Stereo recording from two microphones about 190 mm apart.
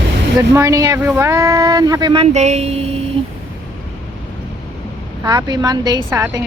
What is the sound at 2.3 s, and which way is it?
Speech, 35° right (ahead or behind).